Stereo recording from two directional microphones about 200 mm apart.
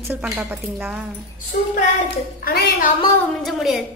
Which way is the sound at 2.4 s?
50° left (ahead or behind).